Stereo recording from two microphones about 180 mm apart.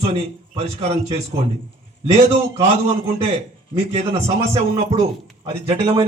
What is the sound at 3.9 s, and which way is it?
A man's voice, 35° right (ahead or behind).